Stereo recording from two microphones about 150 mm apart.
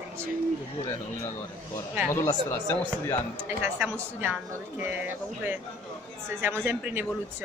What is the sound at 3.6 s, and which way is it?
A woman's voice, 10° right (ahead or behind).